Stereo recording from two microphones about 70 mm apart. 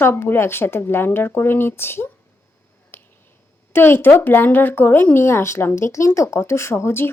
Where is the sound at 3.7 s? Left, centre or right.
Left.